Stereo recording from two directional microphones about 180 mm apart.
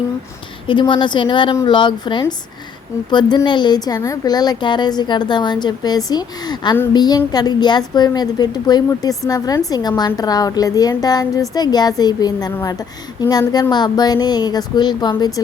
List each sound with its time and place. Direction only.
0.7 s a woman's voice: 25° left (ahead or behind)